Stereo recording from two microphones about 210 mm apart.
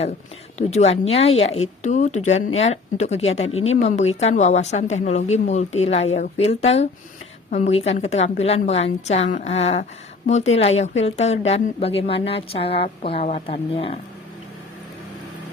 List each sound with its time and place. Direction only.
0.7 s a woman's voice: 30° left (ahead or behind)